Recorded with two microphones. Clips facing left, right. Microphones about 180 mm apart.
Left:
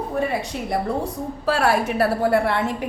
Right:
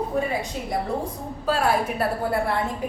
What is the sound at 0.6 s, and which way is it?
A woman's voice, 75° left (ahead or behind).